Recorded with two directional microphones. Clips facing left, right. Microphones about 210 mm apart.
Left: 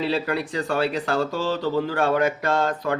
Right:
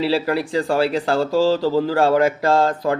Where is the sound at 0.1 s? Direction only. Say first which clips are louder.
Right 5 dB; 30° right (ahead or behind).